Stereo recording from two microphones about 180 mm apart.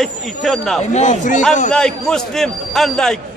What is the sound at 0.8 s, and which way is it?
Speech, 40° left (ahead or behind).